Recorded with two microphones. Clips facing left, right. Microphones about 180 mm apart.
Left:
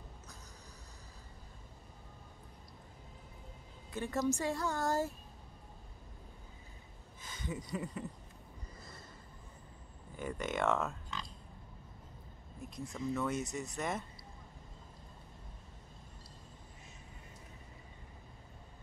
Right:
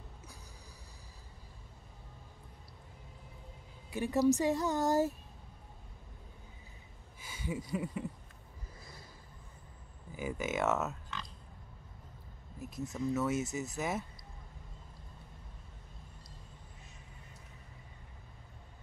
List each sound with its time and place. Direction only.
3.9 s a woman's voice: 15° right (ahead or behind)
7.2 s speech: 10° right (ahead or behind)
8.7 s snort: centre (ahead or behind)
10.1 s speech: 5° right (ahead or behind)
12.5 s speech: 5° right (ahead or behind)